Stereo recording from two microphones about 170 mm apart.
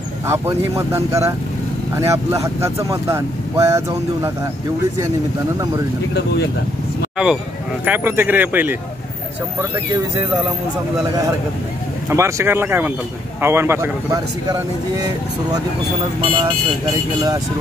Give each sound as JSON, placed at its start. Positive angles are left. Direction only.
{"t": 0.3, "sound": "speech", "side_deg": -15}
{"t": 7.8, "sound": "speech", "side_deg": -10}
{"t": 12.1, "sound": "speech", "side_deg": -15}
{"t": 16.2, "sound": "speech", "side_deg": -30}